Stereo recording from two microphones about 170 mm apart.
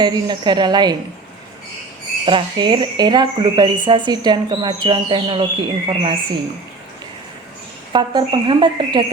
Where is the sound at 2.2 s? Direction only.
25° right (ahead or behind).